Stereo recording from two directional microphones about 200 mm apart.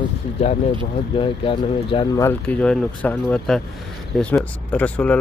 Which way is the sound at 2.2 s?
5° left (ahead or behind).